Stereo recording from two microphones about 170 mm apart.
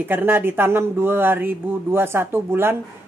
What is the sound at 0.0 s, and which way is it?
Speech, 10° right (ahead or behind).